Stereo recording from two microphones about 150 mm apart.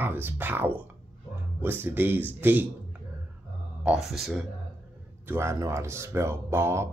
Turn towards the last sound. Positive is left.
turn(degrees=-15)  # may be behind; listen again after turning